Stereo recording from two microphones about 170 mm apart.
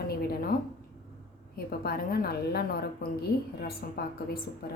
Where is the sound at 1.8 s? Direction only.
65° left (ahead or behind).